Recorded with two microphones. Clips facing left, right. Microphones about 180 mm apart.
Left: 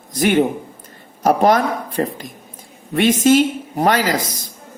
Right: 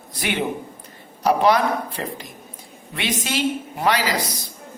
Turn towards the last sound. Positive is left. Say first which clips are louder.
# left 4 dB
turn(degrees=45)  # may be behind; listen again after turning